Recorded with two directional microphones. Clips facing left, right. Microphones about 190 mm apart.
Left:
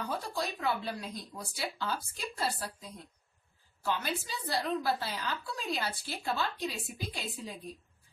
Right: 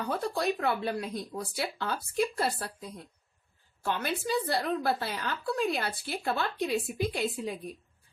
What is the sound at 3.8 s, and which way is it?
Speech, 55° right (ahead or behind).